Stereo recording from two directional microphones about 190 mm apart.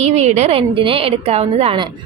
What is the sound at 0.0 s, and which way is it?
A woman's voice, 35° right (ahead or behind).